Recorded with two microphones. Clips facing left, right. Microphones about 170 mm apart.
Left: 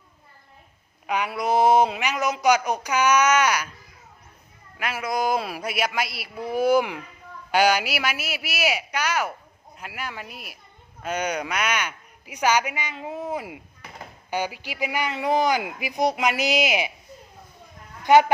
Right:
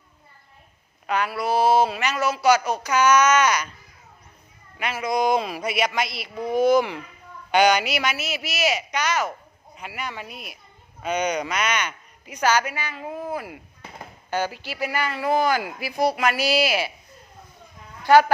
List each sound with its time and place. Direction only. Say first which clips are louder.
1.0 s speech: right 1 dB; 15° left (ahead or behind)
4.8 s a woman's voice: right 2 dB; 5° left (ahead or behind)
18.0 s speech: right 1 dB; 20° left (ahead or behind)